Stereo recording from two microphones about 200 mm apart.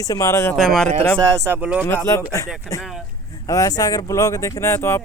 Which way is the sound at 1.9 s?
15° left (ahead or behind).